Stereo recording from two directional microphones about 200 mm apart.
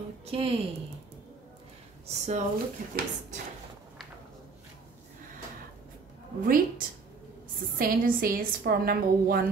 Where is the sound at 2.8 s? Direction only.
45° right (ahead or behind).